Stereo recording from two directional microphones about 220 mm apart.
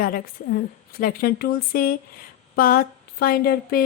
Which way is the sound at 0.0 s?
40° left (ahead or behind).